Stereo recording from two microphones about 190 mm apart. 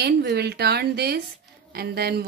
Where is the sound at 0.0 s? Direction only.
60° right (ahead or behind).